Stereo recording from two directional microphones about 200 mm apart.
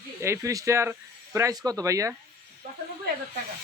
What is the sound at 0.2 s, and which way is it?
Speech, 15° right (ahead or behind).